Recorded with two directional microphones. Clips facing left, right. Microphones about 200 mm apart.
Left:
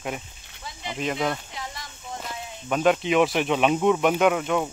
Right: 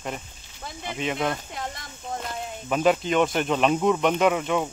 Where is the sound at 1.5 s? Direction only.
50° right (ahead or behind).